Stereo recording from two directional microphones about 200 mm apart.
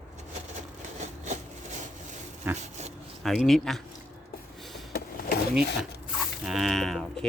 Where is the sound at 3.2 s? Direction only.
Centre (ahead or behind).